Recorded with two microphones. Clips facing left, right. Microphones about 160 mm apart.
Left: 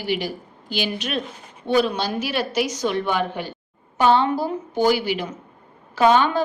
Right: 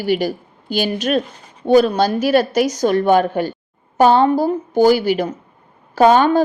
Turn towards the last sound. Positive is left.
turn(degrees=-40)  # may be behind; listen again after turning